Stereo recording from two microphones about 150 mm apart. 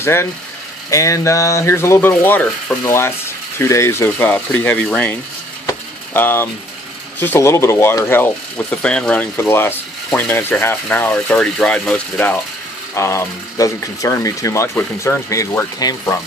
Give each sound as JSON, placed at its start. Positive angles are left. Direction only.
{"t": 0.0, "sound": "speech", "side_deg": 15}
{"t": 5.7, "sound": "a sound", "side_deg": 15}
{"t": 7.2, "sound": "speech", "side_deg": 15}